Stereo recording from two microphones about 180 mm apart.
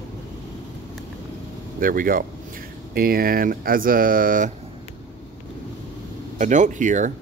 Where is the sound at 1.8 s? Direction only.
50° right (ahead or behind).